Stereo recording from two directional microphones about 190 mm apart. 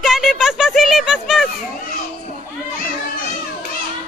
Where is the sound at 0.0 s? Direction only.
Centre (ahead or behind).